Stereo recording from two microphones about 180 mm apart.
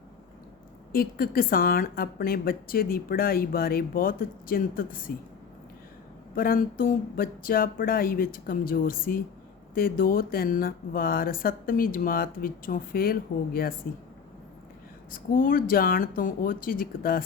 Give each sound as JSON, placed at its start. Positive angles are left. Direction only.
{"t": 0.9, "sound": "speech", "side_deg": 55}
{"t": 6.3, "sound": "speech", "side_deg": 55}
{"t": 15.1, "sound": "speech", "side_deg": 50}